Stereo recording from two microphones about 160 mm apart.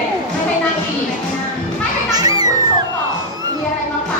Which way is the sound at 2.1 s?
25° right (ahead or behind).